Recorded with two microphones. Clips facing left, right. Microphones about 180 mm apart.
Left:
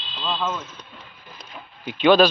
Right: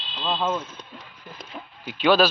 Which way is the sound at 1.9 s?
5° right (ahead or behind).